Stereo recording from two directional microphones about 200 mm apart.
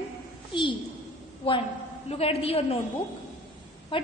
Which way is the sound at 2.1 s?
30° left (ahead or behind).